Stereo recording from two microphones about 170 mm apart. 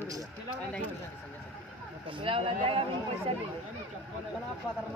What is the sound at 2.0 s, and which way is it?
Speech, 30° right (ahead or behind).